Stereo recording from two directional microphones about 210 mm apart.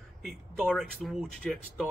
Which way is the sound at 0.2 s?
Centre (ahead or behind).